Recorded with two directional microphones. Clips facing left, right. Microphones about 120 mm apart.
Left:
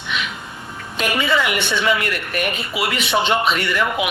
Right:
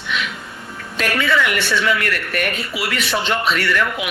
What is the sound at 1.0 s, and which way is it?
A woman's voice, 15° left (ahead or behind).